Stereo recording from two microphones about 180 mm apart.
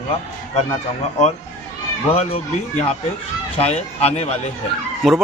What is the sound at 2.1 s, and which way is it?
Speech, 35° left (ahead or behind).